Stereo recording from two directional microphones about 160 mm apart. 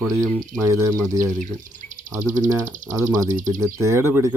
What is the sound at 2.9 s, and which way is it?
Speech, 20° right (ahead or behind).